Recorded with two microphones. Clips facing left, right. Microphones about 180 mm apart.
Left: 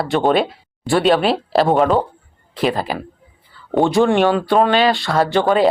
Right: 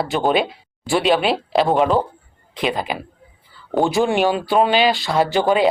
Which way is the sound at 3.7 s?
Centre (ahead or behind).